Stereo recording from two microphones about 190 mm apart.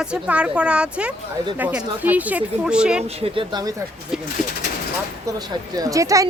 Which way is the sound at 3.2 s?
25° right (ahead or behind).